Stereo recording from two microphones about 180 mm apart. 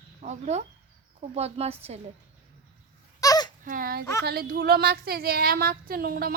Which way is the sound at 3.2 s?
20° left (ahead or behind).